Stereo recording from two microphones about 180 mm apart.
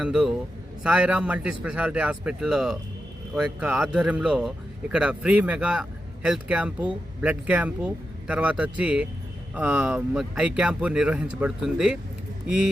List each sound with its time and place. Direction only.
0.0 s speech: 5° right (ahead or behind)